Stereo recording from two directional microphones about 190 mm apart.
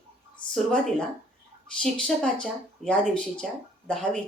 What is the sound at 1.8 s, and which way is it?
A woman's voice, 5° left (ahead or behind).